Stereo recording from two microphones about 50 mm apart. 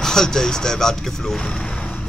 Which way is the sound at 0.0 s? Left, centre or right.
Centre.